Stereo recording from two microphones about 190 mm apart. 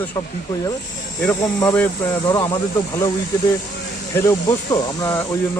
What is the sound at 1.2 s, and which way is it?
Speech, 10° left (ahead or behind).